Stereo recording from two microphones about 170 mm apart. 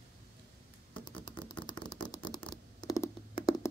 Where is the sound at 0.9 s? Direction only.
25° left (ahead or behind).